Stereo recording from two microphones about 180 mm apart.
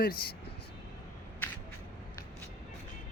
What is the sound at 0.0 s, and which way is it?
Speech, 55° left (ahead or behind).